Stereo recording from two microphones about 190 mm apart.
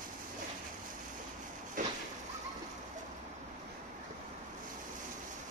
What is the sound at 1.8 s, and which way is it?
Vehicle, 45° right (ahead or behind).